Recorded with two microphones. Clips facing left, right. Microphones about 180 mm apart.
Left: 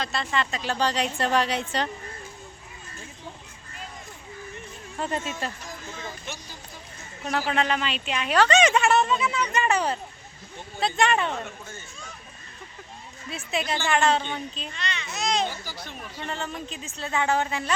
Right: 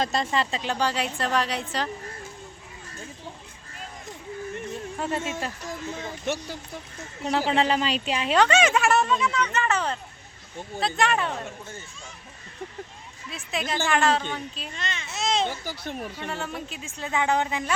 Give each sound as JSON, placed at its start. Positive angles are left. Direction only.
{"t": 0.0, "sound": "speech", "side_deg": -40}
{"t": 0.3, "sound": "speech", "side_deg": -25}
{"t": 0.7, "sound": "speech", "side_deg": -10}
{"t": 4.9, "sound": "speech", "side_deg": -5}
{"t": 6.2, "sound": "speech", "side_deg": -70}
{"t": 7.3, "sound": "speech", "side_deg": -25}
{"t": 8.4, "sound": "speech", "side_deg": -5}
{"t": 10.8, "sound": "speech", "side_deg": 0}
{"t": 13.3, "sound": "speech", "side_deg": 0}
{"t": 14.8, "sound": "a child's voice", "side_deg": -45}
{"t": 15.0, "sound": "children playing", "side_deg": -25}
{"t": 15.4, "sound": "speech", "side_deg": -60}
{"t": 16.2, "sound": "speech", "side_deg": -10}